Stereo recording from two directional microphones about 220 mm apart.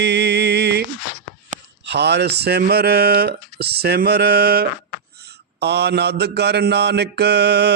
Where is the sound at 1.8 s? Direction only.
50° right (ahead or behind).